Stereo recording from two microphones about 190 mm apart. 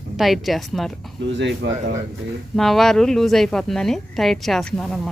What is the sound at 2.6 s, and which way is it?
Speech, centre (ahead or behind).